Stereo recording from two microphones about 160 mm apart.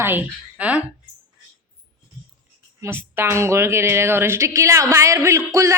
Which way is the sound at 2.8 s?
15° right (ahead or behind).